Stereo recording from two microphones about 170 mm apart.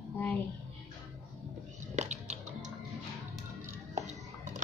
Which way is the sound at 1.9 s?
45° right (ahead or behind).